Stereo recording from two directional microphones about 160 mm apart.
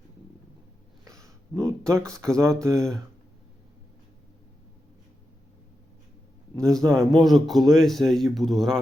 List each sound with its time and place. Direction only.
1.0 s a sound: 20° right (ahead or behind)
2.0 s speech: 20° right (ahead or behind)
2.7 s speech: 5° left (ahead or behind)
6.6 s speech: 20° right (ahead or behind)
7.2 s speech: centre (ahead or behind)